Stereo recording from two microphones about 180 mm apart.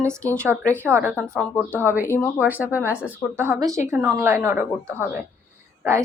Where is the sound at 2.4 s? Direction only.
10° right (ahead or behind).